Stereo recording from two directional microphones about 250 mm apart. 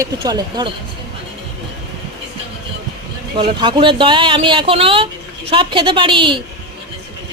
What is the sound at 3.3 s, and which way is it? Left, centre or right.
Speech, centre.